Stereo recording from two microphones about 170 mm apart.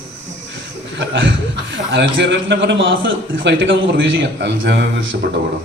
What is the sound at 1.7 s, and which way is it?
A man's voice, 90° right.